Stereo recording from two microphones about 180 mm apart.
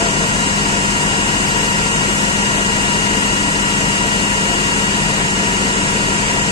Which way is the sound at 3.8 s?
30° left (ahead or behind).